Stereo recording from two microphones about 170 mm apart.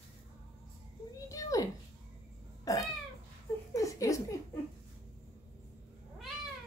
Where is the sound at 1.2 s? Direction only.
20° left (ahead or behind).